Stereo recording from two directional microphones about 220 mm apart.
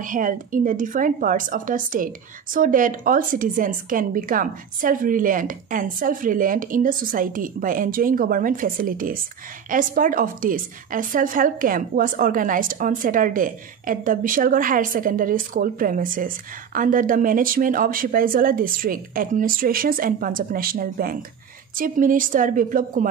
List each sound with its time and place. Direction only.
0.0 s a woman's voice: 40° right (ahead or behind)